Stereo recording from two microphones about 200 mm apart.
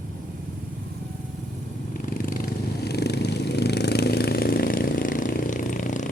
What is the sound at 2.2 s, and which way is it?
Purr, 45° left (ahead or behind).